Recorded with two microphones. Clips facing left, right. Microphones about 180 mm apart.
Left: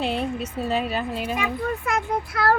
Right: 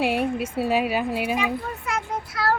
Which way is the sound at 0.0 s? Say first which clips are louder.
Right 3 dB; 10° right (ahead or behind).